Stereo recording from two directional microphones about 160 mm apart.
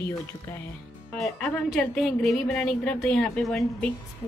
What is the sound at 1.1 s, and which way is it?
Speech, 5° left (ahead or behind).